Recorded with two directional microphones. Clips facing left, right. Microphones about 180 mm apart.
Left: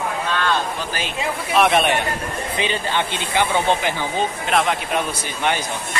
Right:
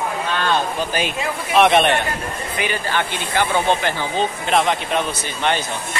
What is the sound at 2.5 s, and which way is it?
Speech, 20° left (ahead or behind).